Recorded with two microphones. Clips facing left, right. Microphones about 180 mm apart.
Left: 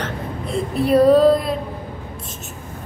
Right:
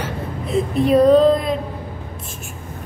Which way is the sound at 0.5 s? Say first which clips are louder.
Right 1 dB; centre (ahead or behind).